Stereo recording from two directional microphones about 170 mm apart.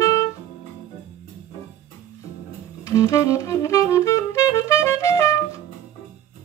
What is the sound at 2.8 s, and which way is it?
Music, 20° left (ahead or behind).